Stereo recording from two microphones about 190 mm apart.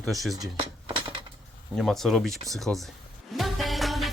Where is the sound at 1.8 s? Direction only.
Centre (ahead or behind).